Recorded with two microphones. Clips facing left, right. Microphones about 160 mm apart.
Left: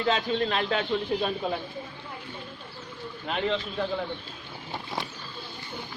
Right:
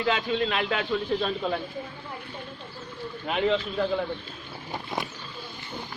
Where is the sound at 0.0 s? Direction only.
40° left (ahead or behind).